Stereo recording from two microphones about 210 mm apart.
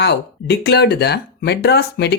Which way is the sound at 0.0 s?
50° left (ahead or behind).